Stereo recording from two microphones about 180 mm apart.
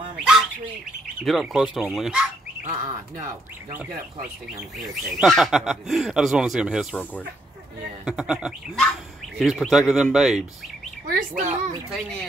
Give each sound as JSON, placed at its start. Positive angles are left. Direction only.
{"t": 1.2, "sound": "speech", "side_deg": 0}
{"t": 2.6, "sound": "speech", "side_deg": -40}
{"t": 4.8, "sound": "speech", "side_deg": 0}
{"t": 8.0, "sound": "speech", "side_deg": -5}
{"t": 11.1, "sound": "speech", "side_deg": -45}
{"t": 11.9, "sound": "speech", "side_deg": 5}